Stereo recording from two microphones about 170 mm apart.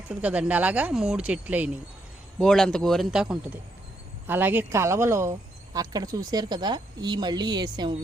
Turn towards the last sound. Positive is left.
turn(degrees=-25)  # may be behind; listen again after turning